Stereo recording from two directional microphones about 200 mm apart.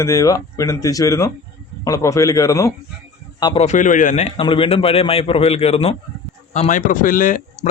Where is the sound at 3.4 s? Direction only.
30° left (ahead or behind).